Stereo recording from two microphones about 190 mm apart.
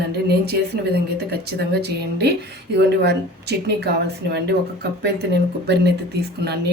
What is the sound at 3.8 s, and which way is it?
Speech, 60° right (ahead or behind).